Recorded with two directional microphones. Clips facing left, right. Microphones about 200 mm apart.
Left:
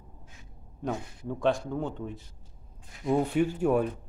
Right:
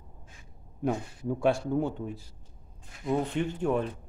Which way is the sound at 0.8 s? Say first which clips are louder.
Right 3 dB; 10° right (ahead or behind).